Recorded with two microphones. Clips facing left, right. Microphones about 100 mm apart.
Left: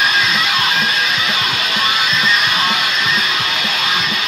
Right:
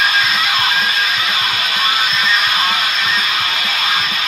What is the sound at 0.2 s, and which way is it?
Music, 40° right (ahead or behind).